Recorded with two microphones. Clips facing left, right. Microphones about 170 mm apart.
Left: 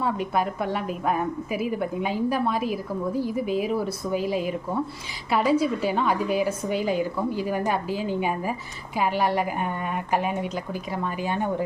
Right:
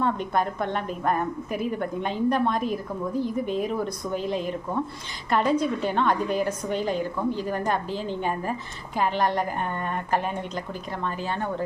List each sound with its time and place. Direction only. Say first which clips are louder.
0.0 s a woman's voice: even; 5° left (ahead or behind)